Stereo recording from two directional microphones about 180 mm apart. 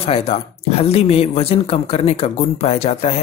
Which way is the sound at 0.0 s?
35° left (ahead or behind).